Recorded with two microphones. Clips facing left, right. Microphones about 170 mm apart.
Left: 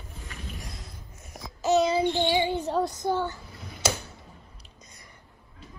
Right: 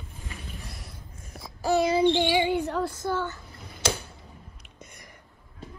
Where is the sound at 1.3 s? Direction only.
20° left (ahead or behind).